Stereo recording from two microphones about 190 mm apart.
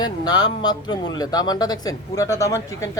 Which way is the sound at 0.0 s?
20° left (ahead or behind).